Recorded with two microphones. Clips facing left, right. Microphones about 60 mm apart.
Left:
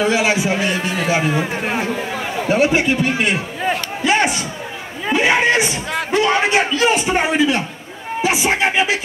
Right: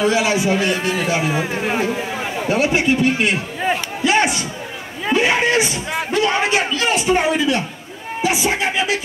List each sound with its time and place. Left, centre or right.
0.0 s a man's voice: left
1.2 s speech: centre
2.4 s a man's voice: left
4.0 s a sound: left
6.1 s a man's voice: left